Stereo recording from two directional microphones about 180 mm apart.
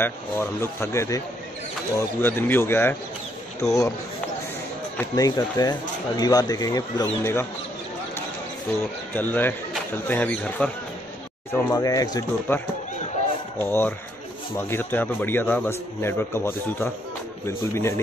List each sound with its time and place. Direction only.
0.0 s a man's voice: 15° left (ahead or behind)
4.9 s speech: 20° left (ahead or behind)
9.1 s a man's voice: 10° left (ahead or behind)
11.7 s a man's voice: 20° left (ahead or behind)